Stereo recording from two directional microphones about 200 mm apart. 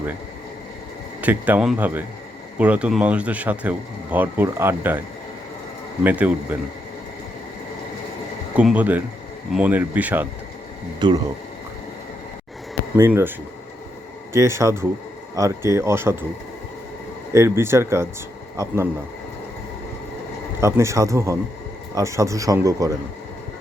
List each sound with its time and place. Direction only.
1.2 s speech: 10° right (ahead or behind)
8.5 s speech: 5° right (ahead or behind)
11.0 s speech: 20° right (ahead or behind)
13.0 s speech: 10° right (ahead or behind)
14.3 s speech: 15° right (ahead or behind)
17.3 s speech: 15° right (ahead or behind)
20.6 s speech: 15° right (ahead or behind)